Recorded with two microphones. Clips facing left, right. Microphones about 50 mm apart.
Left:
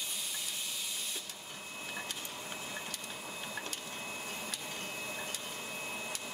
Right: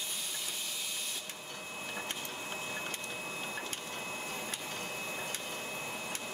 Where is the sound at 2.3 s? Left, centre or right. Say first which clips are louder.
Right 3 dB; right.